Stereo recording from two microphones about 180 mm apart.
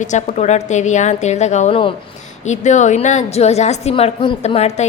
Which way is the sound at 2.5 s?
40° left (ahead or behind).